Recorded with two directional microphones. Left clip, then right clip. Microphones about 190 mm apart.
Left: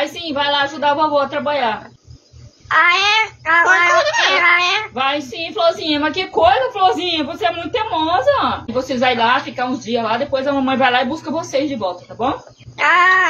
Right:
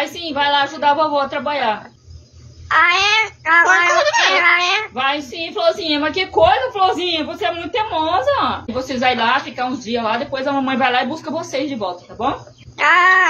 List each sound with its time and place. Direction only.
0.0 s a woman's voice: 20° right (ahead or behind)